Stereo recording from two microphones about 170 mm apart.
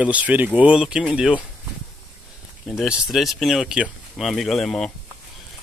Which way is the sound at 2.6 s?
5° right (ahead or behind).